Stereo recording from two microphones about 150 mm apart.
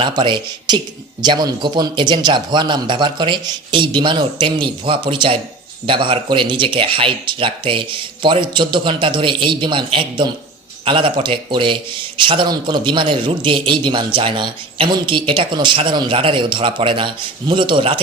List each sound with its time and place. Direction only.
0.0 s a man's voice: 30° right (ahead or behind)